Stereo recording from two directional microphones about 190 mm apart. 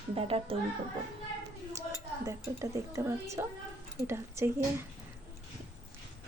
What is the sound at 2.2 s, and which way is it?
A woman's voice, 15° right (ahead or behind).